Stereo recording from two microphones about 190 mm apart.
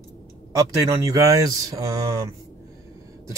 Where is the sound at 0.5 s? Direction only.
15° right (ahead or behind).